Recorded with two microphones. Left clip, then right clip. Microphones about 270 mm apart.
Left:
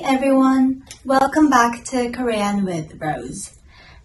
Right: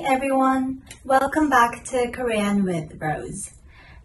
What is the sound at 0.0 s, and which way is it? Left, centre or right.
Speech, centre.